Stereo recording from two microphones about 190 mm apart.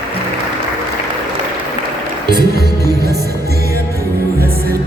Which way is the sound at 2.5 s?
60° right (ahead or behind).